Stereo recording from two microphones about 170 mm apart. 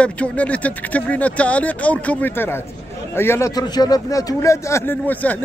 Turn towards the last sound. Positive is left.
turn(degrees=10)  # may be behind; listen again after turning